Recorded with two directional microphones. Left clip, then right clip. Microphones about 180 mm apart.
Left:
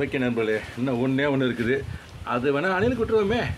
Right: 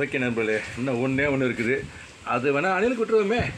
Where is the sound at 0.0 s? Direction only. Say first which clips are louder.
Even; 15° right (ahead or behind).